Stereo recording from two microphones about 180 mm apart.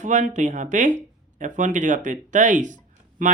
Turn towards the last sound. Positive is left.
turn(degrees=-45)  # may be behind; listen again after turning